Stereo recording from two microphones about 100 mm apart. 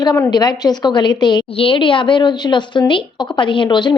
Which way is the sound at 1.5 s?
65° left (ahead or behind).